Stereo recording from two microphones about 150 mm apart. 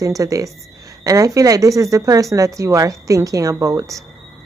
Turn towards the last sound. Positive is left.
turn(degrees=-20)  # may be behind; listen again after turning